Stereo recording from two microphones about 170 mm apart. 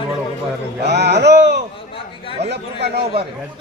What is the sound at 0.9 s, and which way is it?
Speech, 75° right (ahead or behind).